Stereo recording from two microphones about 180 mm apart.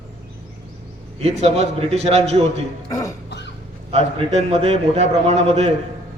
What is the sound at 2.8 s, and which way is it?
Speech, 20° left (ahead or behind).